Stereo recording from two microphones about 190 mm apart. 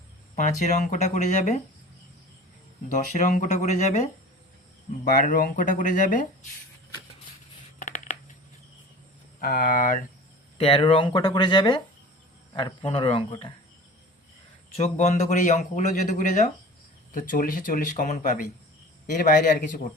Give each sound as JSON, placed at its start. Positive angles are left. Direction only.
{"t": 0.3, "sound": "a man's voice", "side_deg": 40}
{"t": 2.9, "sound": "a man's voice", "side_deg": 40}
{"t": 7.8, "sound": "a sound", "side_deg": 45}
{"t": 9.4, "sound": "speech", "side_deg": 50}
{"t": 10.6, "sound": "speech", "side_deg": 30}
{"t": 14.8, "sound": "a man's voice", "side_deg": 35}